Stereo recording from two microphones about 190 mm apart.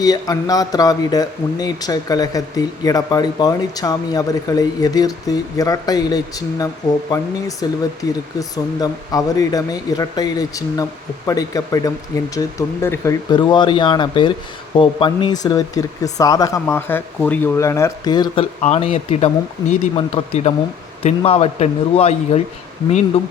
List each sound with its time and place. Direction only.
0.0 s speech: 20° left (ahead or behind)
18.6 s speech: 35° left (ahead or behind)